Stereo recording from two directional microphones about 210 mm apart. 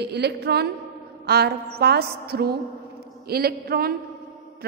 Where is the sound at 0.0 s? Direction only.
50° right (ahead or behind).